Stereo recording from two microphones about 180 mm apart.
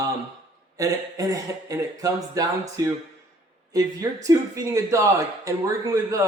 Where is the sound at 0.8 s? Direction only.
20° right (ahead or behind).